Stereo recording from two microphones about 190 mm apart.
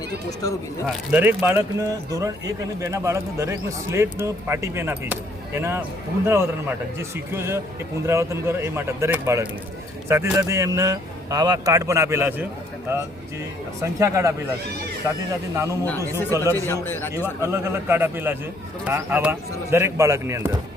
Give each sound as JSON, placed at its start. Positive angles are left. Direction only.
{"t": 1.1, "sound": "speech", "side_deg": -10}
{"t": 15.5, "sound": "speech", "side_deg": -15}
{"t": 16.5, "sound": "speech", "side_deg": 10}
{"t": 17.4, "sound": "speech", "side_deg": -15}